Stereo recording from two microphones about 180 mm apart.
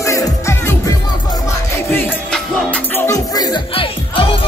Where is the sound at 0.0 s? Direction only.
15° left (ahead or behind).